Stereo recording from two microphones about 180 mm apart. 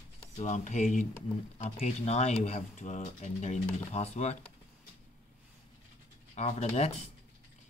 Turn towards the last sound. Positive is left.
turn(degrees=40)  # may be behind; listen again after turning